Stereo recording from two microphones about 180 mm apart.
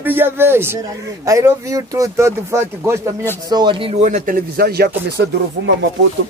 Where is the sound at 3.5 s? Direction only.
25° right (ahead or behind).